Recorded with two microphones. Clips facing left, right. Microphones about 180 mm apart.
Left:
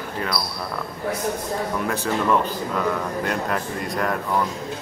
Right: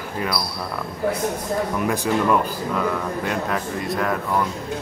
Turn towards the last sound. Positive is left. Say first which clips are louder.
# right 1 dB
turn(degrees=0)  # may be behind; listen again after turning